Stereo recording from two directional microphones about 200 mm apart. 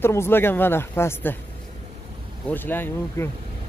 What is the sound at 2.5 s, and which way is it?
Speech, 10° left (ahead or behind).